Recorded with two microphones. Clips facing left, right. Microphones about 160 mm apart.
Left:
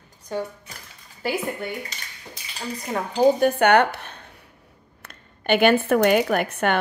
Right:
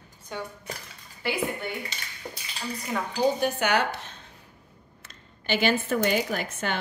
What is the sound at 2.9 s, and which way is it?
A woman's voice, 50° left (ahead or behind).